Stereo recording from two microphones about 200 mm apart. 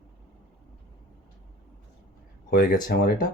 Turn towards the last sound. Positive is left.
turn(degrees=50)  # may be behind; listen again after turning